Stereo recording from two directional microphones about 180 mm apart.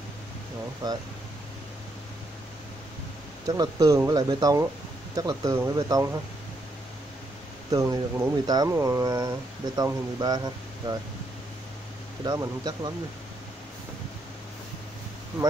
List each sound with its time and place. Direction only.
0.8 s speech: 20° right (ahead or behind)
3.4 s speech: 20° right (ahead or behind)
7.7 s speech: 15° right (ahead or behind)
12.3 s speech: 20° right (ahead or behind)